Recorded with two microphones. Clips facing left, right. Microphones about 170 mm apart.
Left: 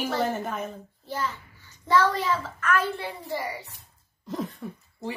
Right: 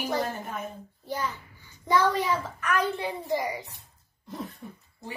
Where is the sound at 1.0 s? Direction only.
15° right (ahead or behind).